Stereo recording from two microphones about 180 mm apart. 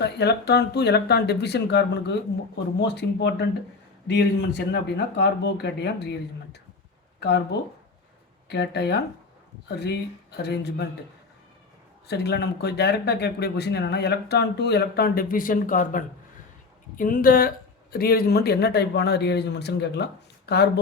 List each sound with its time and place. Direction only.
0.0 s speech: 70° left (ahead or behind)
8.4 s speech: 65° left (ahead or behind)
10.3 s speech: 65° left (ahead or behind)
12.0 s speech: 65° left (ahead or behind)